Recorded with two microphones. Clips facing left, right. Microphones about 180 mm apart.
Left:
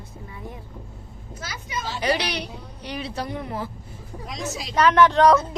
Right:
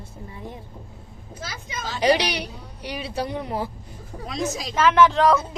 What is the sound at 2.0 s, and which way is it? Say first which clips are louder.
A woman's voice: right 5 dB; 15° right (ahead or behind).